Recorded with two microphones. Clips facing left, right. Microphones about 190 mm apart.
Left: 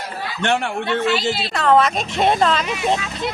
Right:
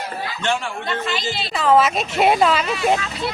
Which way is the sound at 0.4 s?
65° left (ahead or behind).